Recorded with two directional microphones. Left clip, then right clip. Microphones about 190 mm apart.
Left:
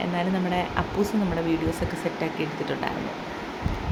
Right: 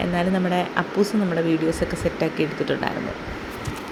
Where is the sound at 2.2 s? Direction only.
20° right (ahead or behind).